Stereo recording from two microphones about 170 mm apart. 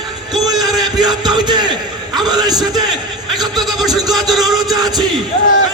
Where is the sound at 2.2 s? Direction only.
25° right (ahead or behind).